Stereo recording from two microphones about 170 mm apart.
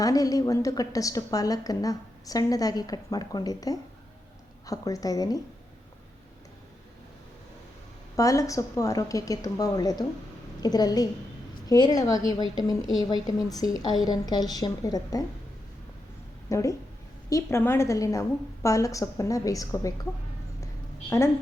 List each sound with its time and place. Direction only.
0.0 s a woman's voice: 20° left (ahead or behind)
8.1 s a woman's voice: 20° left (ahead or behind)
16.5 s a woman's voice: 20° left (ahead or behind)